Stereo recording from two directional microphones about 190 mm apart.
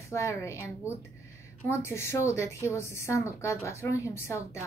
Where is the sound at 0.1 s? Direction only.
15° left (ahead or behind).